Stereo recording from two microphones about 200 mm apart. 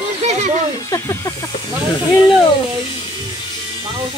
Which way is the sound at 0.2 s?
35° right (ahead or behind).